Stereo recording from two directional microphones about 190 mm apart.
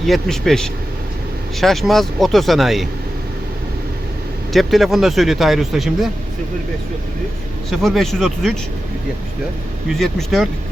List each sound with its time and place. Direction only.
0.0 s speech: centre (ahead or behind)
4.5 s speech: centre (ahead or behind)
7.7 s speech: centre (ahead or behind)
10.0 s speech: centre (ahead or behind)